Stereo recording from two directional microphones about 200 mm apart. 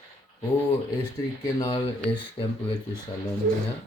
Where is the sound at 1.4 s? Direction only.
20° left (ahead or behind).